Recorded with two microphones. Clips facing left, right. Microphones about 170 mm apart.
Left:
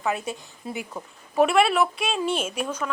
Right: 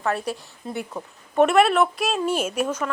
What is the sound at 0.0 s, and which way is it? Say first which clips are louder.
Speech: right 2 dB; centre (ahead or behind).